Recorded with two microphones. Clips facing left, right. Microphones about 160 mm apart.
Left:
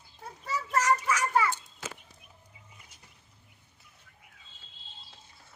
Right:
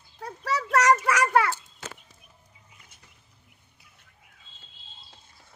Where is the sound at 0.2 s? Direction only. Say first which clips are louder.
Right 6 dB; 85° right.